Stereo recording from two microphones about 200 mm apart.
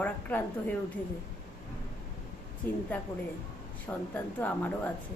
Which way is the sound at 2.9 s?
10° left (ahead or behind).